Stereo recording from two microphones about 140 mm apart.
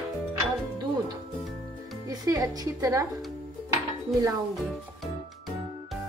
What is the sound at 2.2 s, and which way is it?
Speech, 25° right (ahead or behind).